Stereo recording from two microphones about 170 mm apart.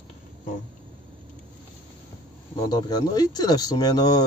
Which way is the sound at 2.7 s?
25° left (ahead or behind).